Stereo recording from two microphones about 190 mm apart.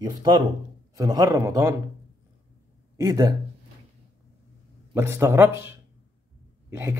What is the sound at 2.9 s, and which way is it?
Speech, 20° right (ahead or behind).